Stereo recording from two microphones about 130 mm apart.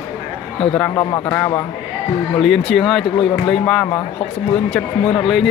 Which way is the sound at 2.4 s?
Centre (ahead or behind).